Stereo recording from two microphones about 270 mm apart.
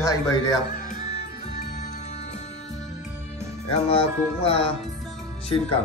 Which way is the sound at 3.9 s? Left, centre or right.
Left.